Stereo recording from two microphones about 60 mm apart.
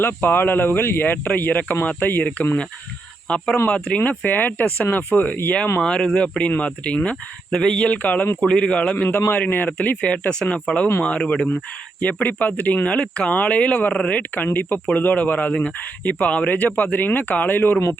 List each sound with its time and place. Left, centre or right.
0.0 s speech: left; by 3.4 s centre
3.9 s speech: left
5.8 s speech: centre
9.0 s speech: left
9.6 s speech: left